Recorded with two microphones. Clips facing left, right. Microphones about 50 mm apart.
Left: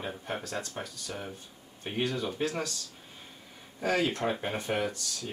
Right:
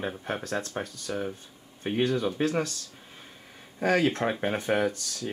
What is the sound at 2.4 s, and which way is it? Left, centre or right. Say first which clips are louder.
Speech: right 5 dB; right.